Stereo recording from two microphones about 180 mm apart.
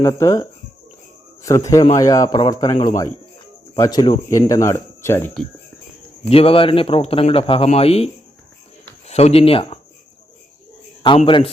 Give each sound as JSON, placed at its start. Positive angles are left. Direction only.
{"t": 0.0, "sound": "speech", "side_deg": 15}
{"t": 1.5, "sound": "a man's voice", "side_deg": 15}
{"t": 6.2, "sound": "a man's voice", "side_deg": 30}
{"t": 11.3, "sound": "a man's voice", "side_deg": 30}